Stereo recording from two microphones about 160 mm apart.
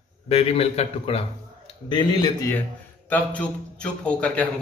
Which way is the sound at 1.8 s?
30° left (ahead or behind).